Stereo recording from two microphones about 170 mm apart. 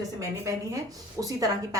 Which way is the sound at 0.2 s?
20° right (ahead or behind).